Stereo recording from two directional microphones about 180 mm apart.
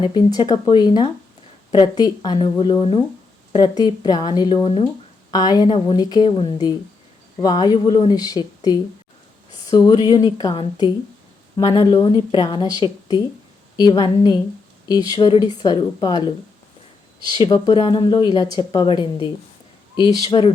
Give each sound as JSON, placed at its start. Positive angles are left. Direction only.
{"t": 0.0, "sound": "a woman's voice", "side_deg": 25}
{"t": 17.2, "sound": "a woman's voice", "side_deg": 25}